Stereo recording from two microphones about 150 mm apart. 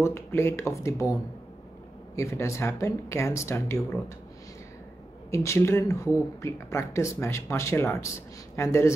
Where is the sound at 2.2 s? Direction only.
20° left (ahead or behind).